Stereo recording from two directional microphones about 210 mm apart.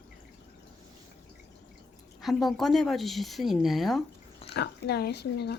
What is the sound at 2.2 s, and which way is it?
Speech, centre (ahead or behind).